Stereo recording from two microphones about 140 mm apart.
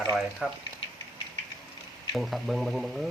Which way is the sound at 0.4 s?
5° right (ahead or behind).